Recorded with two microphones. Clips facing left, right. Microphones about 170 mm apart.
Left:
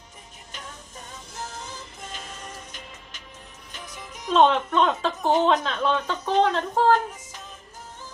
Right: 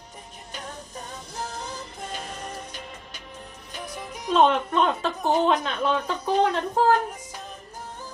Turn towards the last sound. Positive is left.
turn(degrees=-5)  # may be behind; listen again after turning